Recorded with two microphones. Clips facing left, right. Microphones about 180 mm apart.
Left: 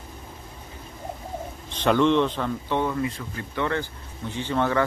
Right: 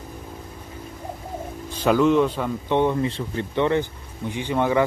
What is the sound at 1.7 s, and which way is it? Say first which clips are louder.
Speech: right 2 dB; 5° right (ahead or behind).